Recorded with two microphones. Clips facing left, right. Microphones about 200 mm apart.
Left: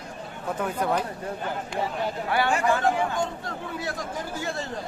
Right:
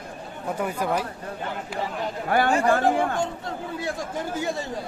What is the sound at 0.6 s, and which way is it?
Speech, 5° right (ahead or behind).